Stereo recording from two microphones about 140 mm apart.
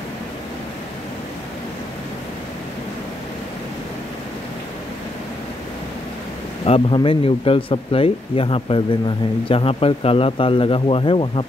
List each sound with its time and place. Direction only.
6.6 s speech: 40° left (ahead or behind)